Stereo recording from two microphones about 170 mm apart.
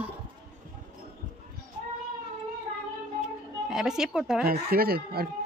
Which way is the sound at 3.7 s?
5° right (ahead or behind).